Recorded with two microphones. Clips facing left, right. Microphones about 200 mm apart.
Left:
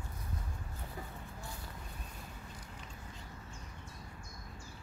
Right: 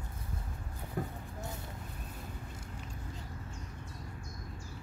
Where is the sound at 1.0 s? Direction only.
55° right (ahead or behind).